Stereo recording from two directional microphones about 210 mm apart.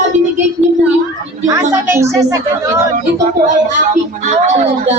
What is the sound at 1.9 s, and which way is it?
Speech, 15° right (ahead or behind).